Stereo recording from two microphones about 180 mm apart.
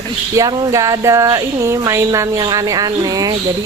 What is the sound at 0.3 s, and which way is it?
A woman's voice, 20° right (ahead or behind).